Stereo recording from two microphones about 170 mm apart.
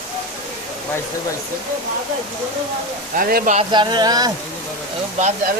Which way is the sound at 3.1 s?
55° right (ahead or behind).